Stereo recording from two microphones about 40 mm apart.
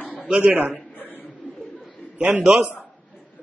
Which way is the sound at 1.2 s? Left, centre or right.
Left.